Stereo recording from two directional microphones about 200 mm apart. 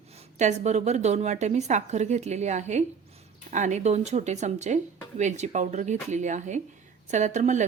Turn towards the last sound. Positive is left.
turn(degrees=-35)  # may be behind; listen again after turning